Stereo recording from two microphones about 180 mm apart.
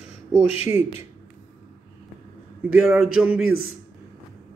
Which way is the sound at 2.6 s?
5° right (ahead or behind).